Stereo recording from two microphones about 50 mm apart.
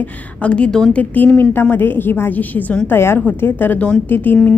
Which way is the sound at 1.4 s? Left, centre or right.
Left.